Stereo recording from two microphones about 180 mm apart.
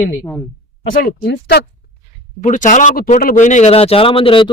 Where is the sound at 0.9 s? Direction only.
65° left (ahead or behind).